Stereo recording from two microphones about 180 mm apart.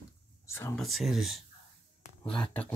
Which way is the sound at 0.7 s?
Centre (ahead or behind).